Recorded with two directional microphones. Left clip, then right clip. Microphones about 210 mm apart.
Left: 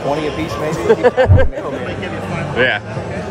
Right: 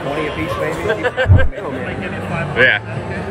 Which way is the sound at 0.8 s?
45° left (ahead or behind).